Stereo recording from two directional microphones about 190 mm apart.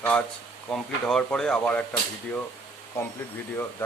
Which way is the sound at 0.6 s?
5° left (ahead or behind).